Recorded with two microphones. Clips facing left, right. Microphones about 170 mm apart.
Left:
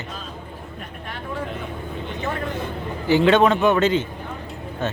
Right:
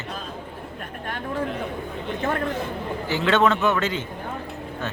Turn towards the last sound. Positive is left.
turn(degrees=20)  # may be behind; listen again after turning